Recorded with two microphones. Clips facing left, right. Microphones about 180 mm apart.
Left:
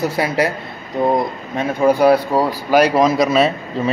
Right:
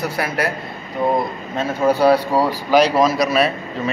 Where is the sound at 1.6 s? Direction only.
10° left (ahead or behind).